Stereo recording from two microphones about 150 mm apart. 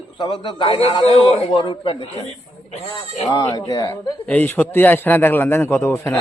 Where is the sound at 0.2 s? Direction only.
30° left (ahead or behind).